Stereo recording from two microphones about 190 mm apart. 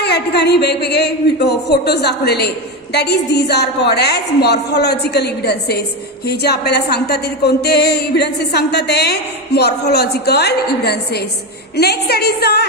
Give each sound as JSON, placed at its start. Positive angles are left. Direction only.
{"t": 0.0, "sound": "speech", "side_deg": 60}